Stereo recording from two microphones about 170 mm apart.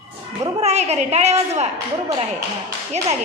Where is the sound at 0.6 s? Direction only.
40° right (ahead or behind).